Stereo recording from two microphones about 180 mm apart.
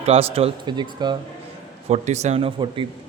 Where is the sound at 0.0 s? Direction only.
35° right (ahead or behind).